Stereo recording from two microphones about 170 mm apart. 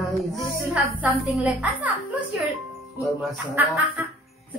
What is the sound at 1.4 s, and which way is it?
Speech, 10° right (ahead or behind).